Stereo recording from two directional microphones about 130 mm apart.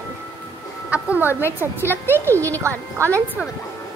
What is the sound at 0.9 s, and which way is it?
A woman's voice, 15° right (ahead or behind).